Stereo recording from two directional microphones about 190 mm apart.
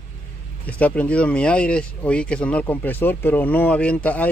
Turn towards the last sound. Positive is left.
turn(degrees=10)  # may be behind; listen again after turning